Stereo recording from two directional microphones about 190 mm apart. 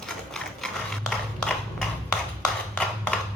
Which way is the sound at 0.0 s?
Centre (ahead or behind).